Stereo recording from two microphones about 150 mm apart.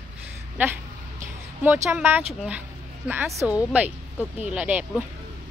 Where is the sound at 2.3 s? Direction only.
Centre (ahead or behind).